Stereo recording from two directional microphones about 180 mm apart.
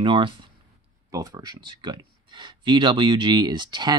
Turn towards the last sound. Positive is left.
turn(degrees=-25)  # may be behind; listen again after turning